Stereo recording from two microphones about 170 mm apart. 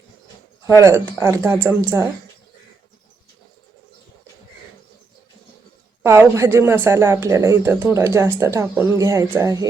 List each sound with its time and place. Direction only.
0.8 s a woman's voice: 15° right (ahead or behind)
6.0 s a woman's voice: 15° right (ahead or behind)